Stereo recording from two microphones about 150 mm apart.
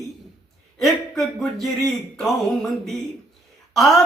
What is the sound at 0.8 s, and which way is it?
Speech, centre (ahead or behind).